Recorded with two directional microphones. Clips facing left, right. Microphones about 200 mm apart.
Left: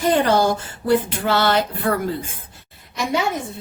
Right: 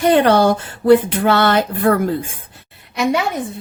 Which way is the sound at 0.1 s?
65° right (ahead or behind).